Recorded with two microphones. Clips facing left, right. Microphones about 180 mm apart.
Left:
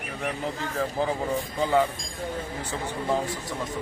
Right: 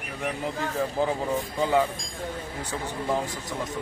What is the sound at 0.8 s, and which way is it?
A man's voice, 15° right (ahead or behind).